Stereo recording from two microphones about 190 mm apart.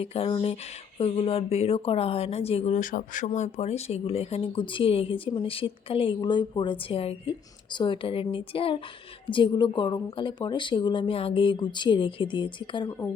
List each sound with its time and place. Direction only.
0.0 s speech: 30° left (ahead or behind)